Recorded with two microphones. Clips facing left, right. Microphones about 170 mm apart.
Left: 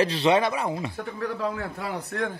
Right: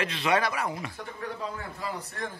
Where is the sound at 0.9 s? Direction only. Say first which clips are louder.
Left 6 dB; 70° left (ahead or behind).